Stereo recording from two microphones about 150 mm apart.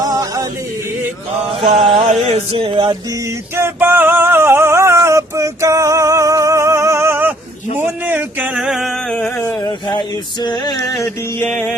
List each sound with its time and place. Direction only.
0.0 s music: 25° right (ahead or behind)
1.5 s chant: 35° right (ahead or behind)
2.1 s a sound: 45° right (ahead or behind)
3.5 s music: 15° right (ahead or behind)
9.1 s a sound: 10° left (ahead or behind)
10.4 s music: 30° left (ahead or behind)